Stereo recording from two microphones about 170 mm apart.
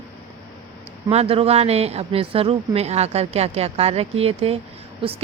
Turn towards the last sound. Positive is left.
turn(degrees=-35)  # may be behind; listen again after turning